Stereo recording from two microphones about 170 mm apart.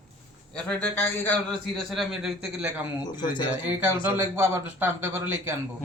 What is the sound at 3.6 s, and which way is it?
A man's voice, 10° right (ahead or behind).